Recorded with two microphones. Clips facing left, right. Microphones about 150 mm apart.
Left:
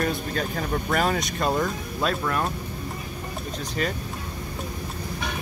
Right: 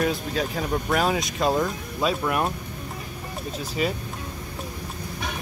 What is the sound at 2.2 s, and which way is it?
Speech, 15° right (ahead or behind).